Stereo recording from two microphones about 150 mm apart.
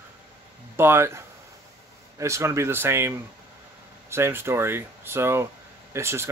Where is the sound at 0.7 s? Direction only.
15° right (ahead or behind).